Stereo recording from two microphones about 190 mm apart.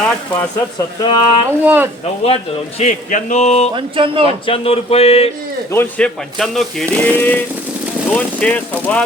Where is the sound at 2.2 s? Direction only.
30° left (ahead or behind).